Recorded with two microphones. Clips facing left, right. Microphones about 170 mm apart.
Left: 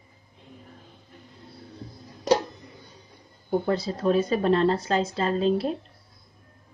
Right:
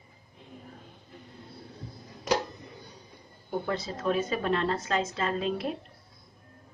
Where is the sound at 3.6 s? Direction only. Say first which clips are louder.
Left 4 dB; 35° left (ahead or behind).